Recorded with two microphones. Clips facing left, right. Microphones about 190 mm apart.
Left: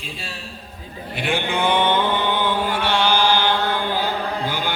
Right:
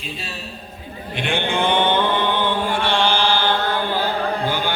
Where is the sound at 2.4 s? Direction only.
10° left (ahead or behind).